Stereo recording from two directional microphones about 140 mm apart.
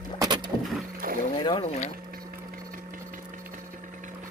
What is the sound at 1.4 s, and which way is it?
Speech, 30° left (ahead or behind).